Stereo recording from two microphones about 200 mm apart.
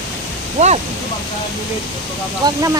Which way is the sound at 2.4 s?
15° right (ahead or behind).